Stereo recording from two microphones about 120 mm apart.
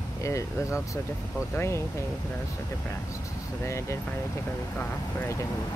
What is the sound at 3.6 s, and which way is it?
Speech, 25° left (ahead or behind).